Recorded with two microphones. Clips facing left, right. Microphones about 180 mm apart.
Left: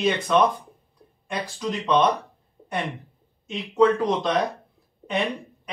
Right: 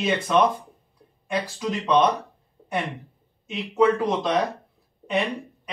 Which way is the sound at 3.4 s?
5° right (ahead or behind).